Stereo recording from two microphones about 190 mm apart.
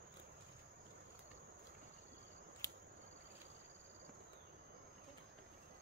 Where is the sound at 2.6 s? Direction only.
15° left (ahead or behind).